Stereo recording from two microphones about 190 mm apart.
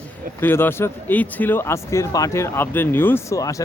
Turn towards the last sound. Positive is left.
turn(degrees=15)  # may be behind; listen again after turning